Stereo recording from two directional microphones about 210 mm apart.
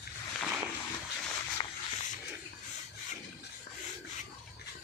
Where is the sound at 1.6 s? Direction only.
20° left (ahead or behind).